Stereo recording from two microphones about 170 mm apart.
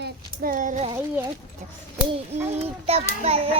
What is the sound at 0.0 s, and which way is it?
Child singing, 55° right (ahead or behind).